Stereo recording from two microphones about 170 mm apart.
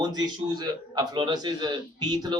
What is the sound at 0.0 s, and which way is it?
A man's voice, 25° right (ahead or behind).